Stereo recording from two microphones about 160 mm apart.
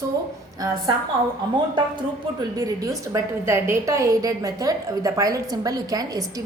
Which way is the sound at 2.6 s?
25° right (ahead or behind).